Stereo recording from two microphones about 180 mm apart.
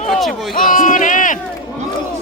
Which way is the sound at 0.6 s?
50° left (ahead or behind).